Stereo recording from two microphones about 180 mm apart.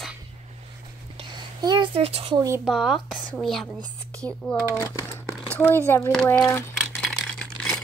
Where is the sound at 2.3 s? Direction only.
20° right (ahead or behind).